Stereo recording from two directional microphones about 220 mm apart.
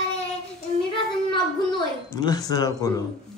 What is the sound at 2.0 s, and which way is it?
Speech, 15° left (ahead or behind).